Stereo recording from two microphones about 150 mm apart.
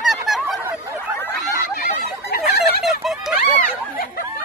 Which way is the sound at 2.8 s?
Centre (ahead or behind).